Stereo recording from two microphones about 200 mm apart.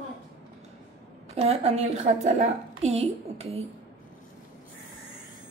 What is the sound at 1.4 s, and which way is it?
A woman's voice, 30° right (ahead or behind).